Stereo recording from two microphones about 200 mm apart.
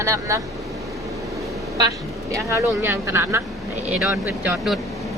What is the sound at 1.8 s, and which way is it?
Speech, 15° right (ahead or behind).